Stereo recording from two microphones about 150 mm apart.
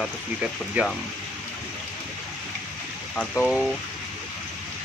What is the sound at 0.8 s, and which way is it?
Speech, 10° right (ahead or behind).